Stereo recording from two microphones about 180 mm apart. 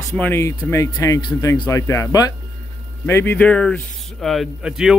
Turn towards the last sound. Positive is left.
turn(degrees=-5)  # may be behind; listen again after turning